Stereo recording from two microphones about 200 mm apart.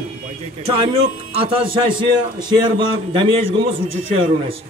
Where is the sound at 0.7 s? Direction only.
30° right (ahead or behind).